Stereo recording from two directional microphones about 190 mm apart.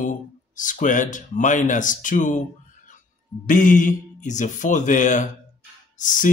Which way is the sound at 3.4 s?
45° left (ahead or behind).